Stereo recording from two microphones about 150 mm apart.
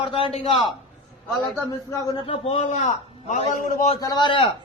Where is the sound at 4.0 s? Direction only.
25° left (ahead or behind).